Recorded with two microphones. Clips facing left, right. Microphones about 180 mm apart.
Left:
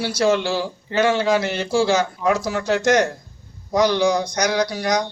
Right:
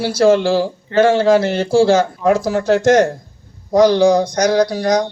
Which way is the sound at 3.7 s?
30° right (ahead or behind).